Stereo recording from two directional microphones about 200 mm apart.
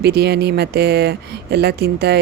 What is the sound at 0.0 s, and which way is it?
Speech, 55° right (ahead or behind).